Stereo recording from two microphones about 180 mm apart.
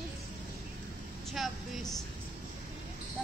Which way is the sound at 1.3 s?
Centre (ahead or behind).